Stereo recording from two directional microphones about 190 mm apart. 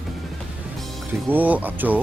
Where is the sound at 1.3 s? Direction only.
10° right (ahead or behind).